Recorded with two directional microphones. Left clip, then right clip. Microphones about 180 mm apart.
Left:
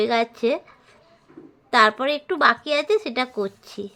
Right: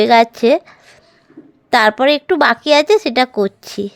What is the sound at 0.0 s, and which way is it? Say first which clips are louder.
A woman's voice: right 11 dB; 45° right (ahead or behind).